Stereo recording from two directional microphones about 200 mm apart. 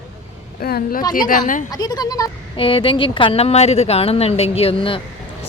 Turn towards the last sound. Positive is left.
turn(degrees=25)  # may be behind; listen again after turning